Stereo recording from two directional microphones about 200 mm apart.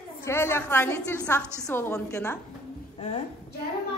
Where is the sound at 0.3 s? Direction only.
10° left (ahead or behind).